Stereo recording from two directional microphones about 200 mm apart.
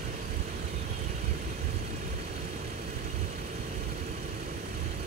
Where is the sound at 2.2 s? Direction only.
50° right (ahead or behind).